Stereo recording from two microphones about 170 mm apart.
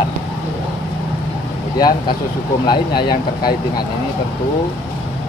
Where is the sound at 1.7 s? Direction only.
25° left (ahead or behind).